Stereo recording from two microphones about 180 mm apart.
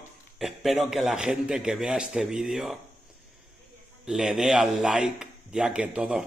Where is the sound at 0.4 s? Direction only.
Centre (ahead or behind).